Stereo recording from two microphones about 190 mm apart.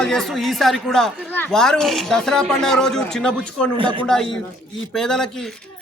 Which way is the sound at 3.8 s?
25° right (ahead or behind).